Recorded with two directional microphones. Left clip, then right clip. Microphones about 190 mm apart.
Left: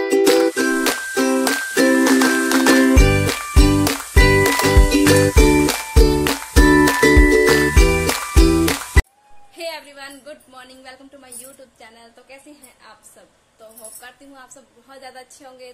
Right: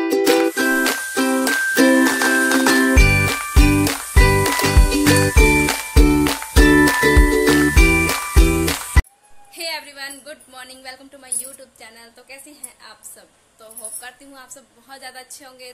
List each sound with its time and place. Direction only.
0.0 s music: 5° left (ahead or behind)
9.6 s a sound: 5° left (ahead or behind)
11.8 s a woman's voice: 5° left (ahead or behind)
14.0 s a woman's voice: 5° left (ahead or behind)